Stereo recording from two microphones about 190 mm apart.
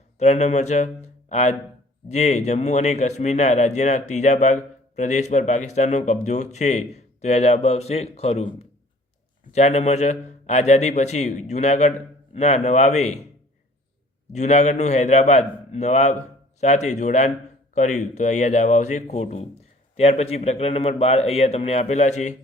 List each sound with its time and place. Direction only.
0.2 s speech: 35° left (ahead or behind)
14.3 s speech: 35° left (ahead or behind)